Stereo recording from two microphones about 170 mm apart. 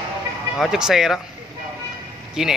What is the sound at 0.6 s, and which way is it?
Speech, 5° right (ahead or behind).